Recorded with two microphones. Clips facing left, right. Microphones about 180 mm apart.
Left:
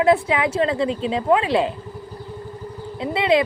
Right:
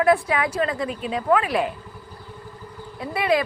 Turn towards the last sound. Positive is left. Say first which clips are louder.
# left 3 dB
turn(degrees=25)  # may be behind; listen again after turning